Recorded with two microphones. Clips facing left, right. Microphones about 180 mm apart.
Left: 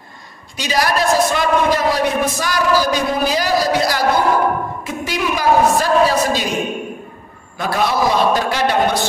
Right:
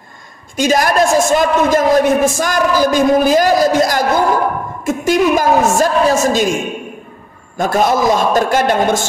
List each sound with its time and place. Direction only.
0.6 s a man's voice: 50° right (ahead or behind)